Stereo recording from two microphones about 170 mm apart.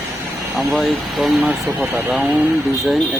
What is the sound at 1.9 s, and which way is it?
Speech, 10° right (ahead or behind).